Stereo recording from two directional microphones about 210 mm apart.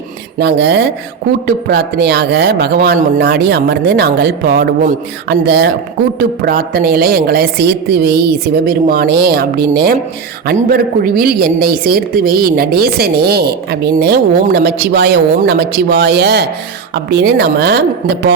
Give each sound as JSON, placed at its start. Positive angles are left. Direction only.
{"t": 0.3, "sound": "a woman's voice", "side_deg": -55}